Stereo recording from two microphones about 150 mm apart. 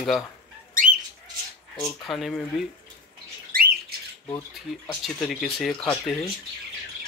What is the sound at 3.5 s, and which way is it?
Squawk, 75° right (ahead or behind).